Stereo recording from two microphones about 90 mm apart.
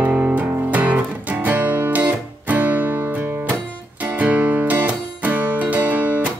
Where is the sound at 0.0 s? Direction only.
15° right (ahead or behind).